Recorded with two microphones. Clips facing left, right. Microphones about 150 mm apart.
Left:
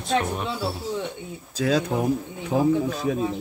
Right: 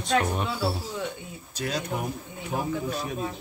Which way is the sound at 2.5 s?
90° left.